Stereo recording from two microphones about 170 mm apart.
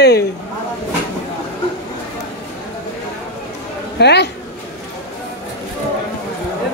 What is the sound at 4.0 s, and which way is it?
Speech, 80° left.